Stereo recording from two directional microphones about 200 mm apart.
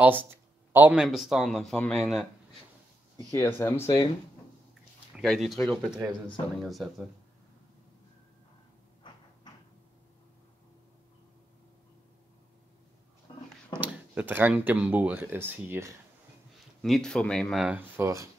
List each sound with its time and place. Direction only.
0.0 s speech: 10° right (ahead or behind)
3.3 s speech: 10° left (ahead or behind)
5.1 s speech: centre (ahead or behind)
13.3 s a sound: 20° left (ahead or behind)
13.7 s speech: 10° right (ahead or behind)
16.8 s speech: centre (ahead or behind); by 18.3 s 15° right (ahead or behind)